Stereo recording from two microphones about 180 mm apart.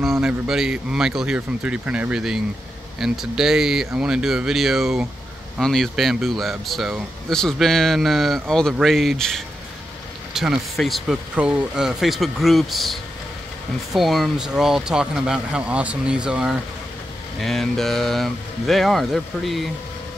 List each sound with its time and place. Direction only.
0.0 s speech: centre (ahead or behind)